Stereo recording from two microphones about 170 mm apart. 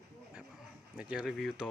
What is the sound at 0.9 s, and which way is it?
Speech, 5° right (ahead or behind).